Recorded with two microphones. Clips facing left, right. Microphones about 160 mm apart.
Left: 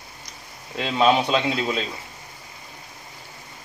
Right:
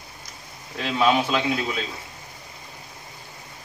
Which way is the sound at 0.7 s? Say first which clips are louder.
Left 2 dB; 20° left (ahead or behind).